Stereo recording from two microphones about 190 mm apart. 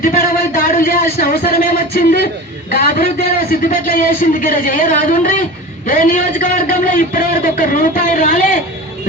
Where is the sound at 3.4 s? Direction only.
50° left (ahead or behind).